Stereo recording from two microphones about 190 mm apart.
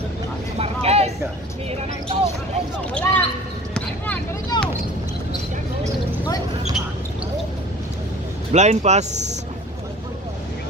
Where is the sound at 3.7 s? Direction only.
10° left (ahead or behind).